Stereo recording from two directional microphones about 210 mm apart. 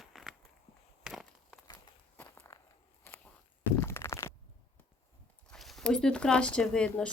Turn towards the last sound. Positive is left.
turn(degrees=5)  # may be behind; listen again after turning